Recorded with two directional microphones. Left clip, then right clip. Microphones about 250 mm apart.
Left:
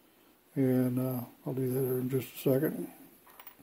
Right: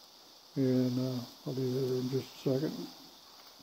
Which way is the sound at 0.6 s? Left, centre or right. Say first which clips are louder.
Left 1 dB; centre.